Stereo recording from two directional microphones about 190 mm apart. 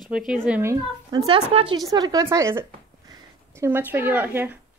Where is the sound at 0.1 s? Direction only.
Centre (ahead or behind).